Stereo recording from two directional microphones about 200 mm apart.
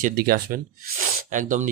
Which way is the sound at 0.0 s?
50° right (ahead or behind).